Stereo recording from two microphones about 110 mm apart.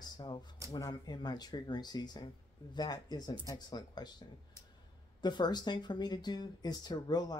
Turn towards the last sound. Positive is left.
turn(degrees=35)  # may be behind; listen again after turning